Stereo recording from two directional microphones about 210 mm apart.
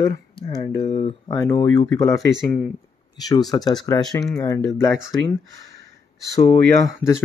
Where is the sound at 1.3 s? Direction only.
15° left (ahead or behind).